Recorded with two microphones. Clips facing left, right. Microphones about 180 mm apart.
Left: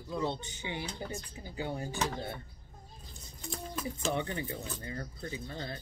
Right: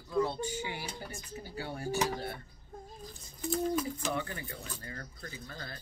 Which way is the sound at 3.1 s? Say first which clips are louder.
Right 9 dB; 5° right (ahead or behind).